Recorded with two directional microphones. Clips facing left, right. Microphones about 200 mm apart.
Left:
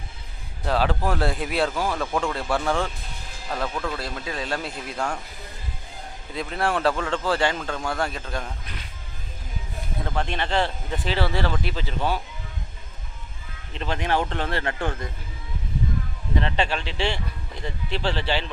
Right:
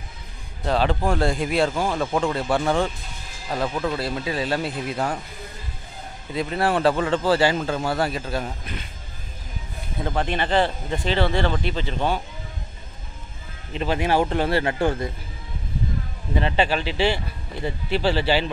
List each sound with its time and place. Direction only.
0.7 s speech: 5° left (ahead or behind)
1.9 s speech: 15° right (ahead or behind)
2.5 s speech: centre (ahead or behind)
3.4 s speech: 15° right (ahead or behind)
3.9 s speech: 5° right (ahead or behind)
6.3 s speech: 5° right (ahead or behind)
10.0 s speech: 5° right (ahead or behind)
13.7 s speech: 5° right (ahead or behind)
16.3 s speech: 5° right (ahead or behind)